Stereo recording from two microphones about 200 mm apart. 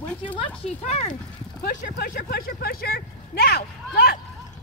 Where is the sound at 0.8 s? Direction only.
35° left (ahead or behind).